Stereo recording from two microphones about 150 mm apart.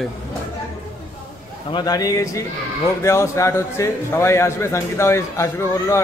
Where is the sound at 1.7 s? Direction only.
25° left (ahead or behind).